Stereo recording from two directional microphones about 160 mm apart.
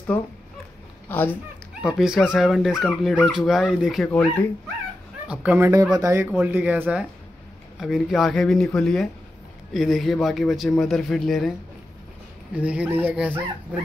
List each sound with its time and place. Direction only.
1.0 s speech: 10° left (ahead or behind)
1.8 s speech: centre (ahead or behind)
4.1 s speech: 10° left (ahead or behind)
5.3 s speech: 10° right (ahead or behind)
12.5 s speech: 10° right (ahead or behind)